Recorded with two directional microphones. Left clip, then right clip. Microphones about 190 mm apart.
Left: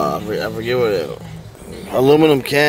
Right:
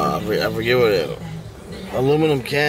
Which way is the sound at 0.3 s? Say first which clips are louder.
Right 1 dB; 10° left (ahead or behind).